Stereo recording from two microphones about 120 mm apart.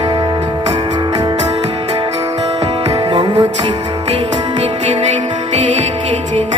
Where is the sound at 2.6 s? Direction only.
50° right (ahead or behind).